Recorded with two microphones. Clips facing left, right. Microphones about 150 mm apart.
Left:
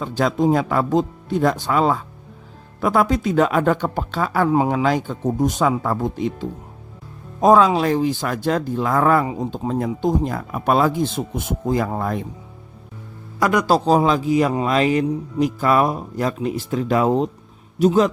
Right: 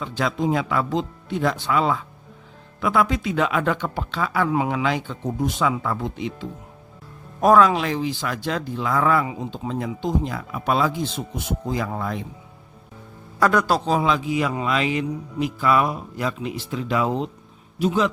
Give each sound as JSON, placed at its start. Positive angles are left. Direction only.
{"t": 0.0, "sound": "speech", "side_deg": 40}
{"t": 7.4, "sound": "speech", "side_deg": 25}
{"t": 7.8, "sound": "speech", "side_deg": 45}
{"t": 13.4, "sound": "speech", "side_deg": 10}
{"t": 13.7, "sound": "a man's voice", "side_deg": 35}